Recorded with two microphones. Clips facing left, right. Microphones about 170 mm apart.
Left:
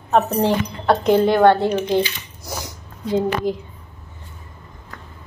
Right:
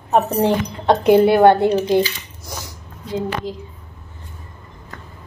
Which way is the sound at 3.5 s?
55° left (ahead or behind).